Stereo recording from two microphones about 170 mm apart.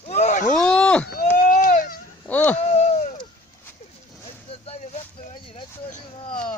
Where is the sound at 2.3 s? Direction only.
10° left (ahead or behind).